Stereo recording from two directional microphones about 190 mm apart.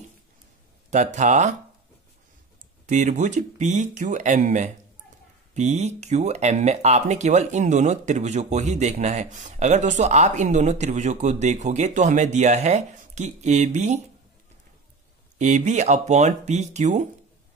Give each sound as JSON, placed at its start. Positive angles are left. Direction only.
{"t": 0.8, "sound": "speech", "side_deg": -40}
{"t": 2.9, "sound": "speech", "side_deg": -40}
{"t": 15.3, "sound": "speech", "side_deg": -40}